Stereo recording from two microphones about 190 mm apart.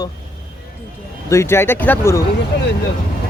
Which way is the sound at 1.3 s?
15° left (ahead or behind).